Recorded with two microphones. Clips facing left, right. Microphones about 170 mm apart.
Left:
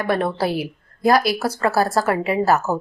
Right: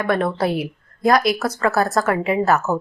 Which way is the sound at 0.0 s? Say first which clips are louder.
Right 1 dB; 30° left (ahead or behind).